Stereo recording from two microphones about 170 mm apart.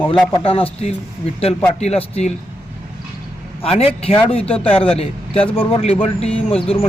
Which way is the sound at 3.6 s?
35° left (ahead or behind).